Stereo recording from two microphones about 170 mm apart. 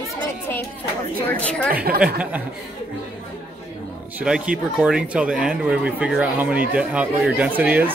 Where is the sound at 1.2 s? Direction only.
10° left (ahead or behind).